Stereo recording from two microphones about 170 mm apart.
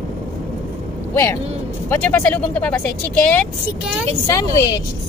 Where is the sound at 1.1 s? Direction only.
15° left (ahead or behind).